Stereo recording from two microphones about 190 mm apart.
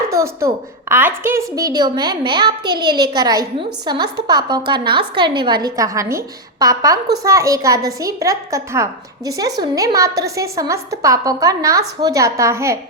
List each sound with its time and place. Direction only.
0.1 s a woman's voice: 15° right (ahead or behind)